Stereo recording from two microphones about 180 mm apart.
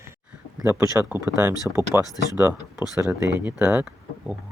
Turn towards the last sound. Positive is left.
turn(degrees=-10)  # may be behind; listen again after turning